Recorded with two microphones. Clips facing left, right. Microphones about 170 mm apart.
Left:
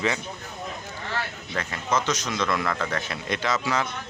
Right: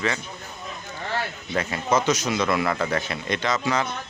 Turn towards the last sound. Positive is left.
turn(degrees=5)  # may be behind; listen again after turning